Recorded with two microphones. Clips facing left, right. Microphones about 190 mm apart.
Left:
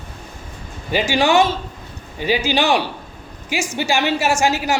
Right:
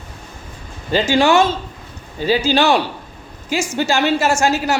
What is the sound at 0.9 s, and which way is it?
A woman's voice, 15° left (ahead or behind).